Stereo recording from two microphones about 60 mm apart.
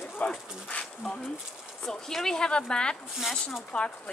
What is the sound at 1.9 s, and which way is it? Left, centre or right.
Speech, centre.